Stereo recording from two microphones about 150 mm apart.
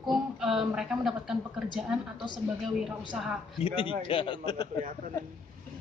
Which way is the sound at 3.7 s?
35° left (ahead or behind).